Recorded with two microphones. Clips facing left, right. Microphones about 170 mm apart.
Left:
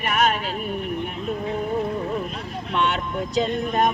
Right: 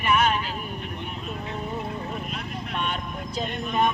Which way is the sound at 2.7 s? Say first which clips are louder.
Left 8 dB; 85° left.